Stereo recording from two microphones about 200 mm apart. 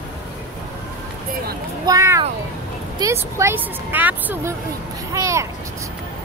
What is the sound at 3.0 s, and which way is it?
Speech, 15° right (ahead or behind).